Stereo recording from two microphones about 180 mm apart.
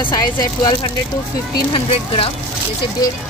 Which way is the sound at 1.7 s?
30° left (ahead or behind).